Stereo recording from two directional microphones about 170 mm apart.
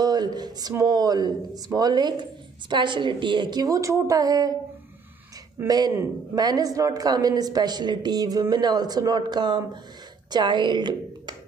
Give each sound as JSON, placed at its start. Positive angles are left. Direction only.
{"t": 0.0, "sound": "a woman's voice", "side_deg": -25}
{"t": 5.6, "sound": "a woman's voice", "side_deg": -25}